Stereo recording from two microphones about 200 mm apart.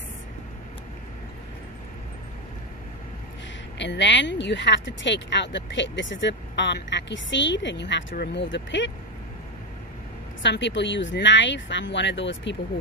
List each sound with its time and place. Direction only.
3.7 s speech: 60° left (ahead or behind)
10.4 s speech: 65° left (ahead or behind)